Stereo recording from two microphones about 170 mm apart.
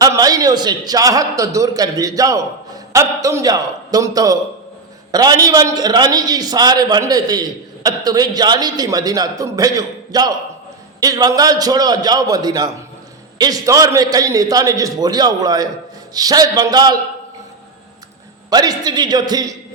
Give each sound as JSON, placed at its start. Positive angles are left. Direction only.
{"t": 0.0, "sound": "a man's voice", "side_deg": -20}
{"t": 18.5, "sound": "a man's voice", "side_deg": -25}